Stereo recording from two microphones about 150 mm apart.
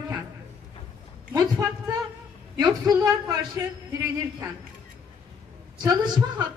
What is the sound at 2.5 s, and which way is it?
Speech, 25° right (ahead or behind).